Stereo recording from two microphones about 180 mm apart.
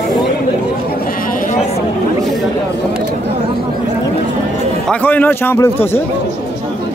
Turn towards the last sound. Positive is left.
turn(degrees=10)  # may be behind; listen again after turning